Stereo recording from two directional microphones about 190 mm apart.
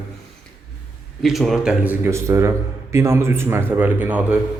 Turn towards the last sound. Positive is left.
turn(degrees=-10)  # may be behind; listen again after turning